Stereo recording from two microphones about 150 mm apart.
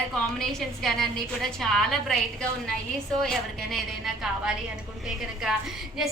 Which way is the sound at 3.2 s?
Centre (ahead or behind).